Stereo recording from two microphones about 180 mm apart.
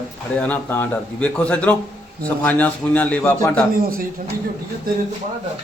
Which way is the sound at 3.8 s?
55° right (ahead or behind).